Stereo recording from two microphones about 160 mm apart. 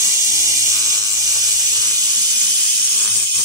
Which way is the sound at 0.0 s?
20° left (ahead or behind).